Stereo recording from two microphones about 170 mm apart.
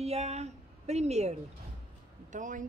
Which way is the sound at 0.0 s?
40° right (ahead or behind).